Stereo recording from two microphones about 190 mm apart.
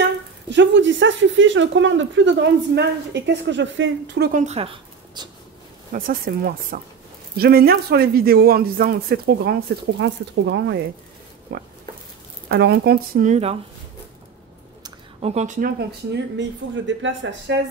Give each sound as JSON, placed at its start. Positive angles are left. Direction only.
{"t": 0.5, "sound": "speech", "side_deg": -75}
{"t": 4.3, "sound": "speech", "side_deg": -40}
{"t": 5.9, "sound": "a man's voice", "side_deg": -50}
{"t": 11.5, "sound": "a man's voice", "side_deg": -55}
{"t": 15.2, "sound": "speech", "side_deg": -40}
{"t": 16.1, "sound": "speech", "side_deg": -75}